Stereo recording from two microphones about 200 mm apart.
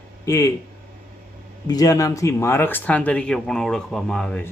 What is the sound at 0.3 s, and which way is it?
Speech, 15° left (ahead or behind).